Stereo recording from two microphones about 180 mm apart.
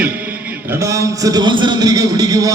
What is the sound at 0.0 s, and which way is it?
A man's voice, 10° right (ahead or behind).